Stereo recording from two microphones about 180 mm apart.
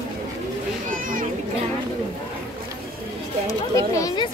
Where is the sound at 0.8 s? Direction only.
50° right (ahead or behind).